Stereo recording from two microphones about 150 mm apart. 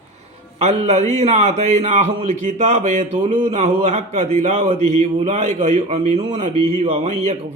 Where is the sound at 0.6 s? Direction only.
45° right (ahead or behind).